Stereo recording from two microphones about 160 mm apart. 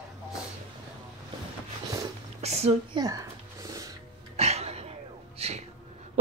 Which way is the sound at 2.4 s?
40° right (ahead or behind).